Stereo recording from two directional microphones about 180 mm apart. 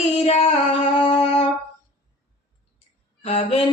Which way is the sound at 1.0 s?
30° left (ahead or behind).